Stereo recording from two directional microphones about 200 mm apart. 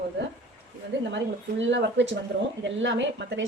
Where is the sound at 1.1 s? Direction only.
65° right (ahead or behind).